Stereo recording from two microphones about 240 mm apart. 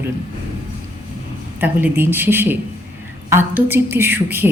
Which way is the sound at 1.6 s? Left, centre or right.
Centre.